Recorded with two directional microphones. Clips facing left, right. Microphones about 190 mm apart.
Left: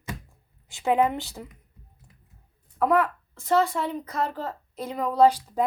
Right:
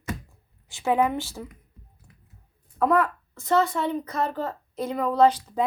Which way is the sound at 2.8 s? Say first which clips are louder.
Even; 5° left (ahead or behind).